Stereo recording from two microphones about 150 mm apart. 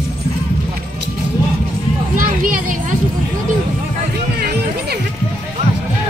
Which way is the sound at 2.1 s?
65° right (ahead or behind).